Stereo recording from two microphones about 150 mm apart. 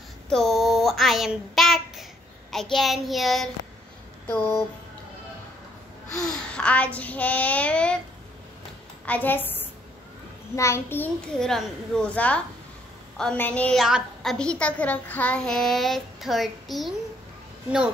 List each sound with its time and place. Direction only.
0.3 s a sound: centre (ahead or behind)
2.5 s a woman's voice: centre (ahead or behind)
4.3 s a child's voice: 15° left (ahead or behind)
6.5 s a child's voice: 10° left (ahead or behind)
9.0 s a woman's voice: 10° left (ahead or behind)